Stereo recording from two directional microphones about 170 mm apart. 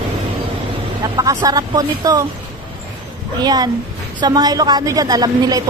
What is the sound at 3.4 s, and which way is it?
A woman's voice, 25° right (ahead or behind).